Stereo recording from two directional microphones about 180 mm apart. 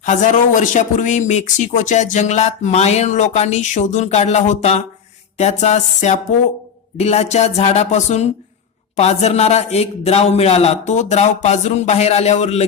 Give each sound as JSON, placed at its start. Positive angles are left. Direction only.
{"t": 0.0, "sound": "speech", "side_deg": 45}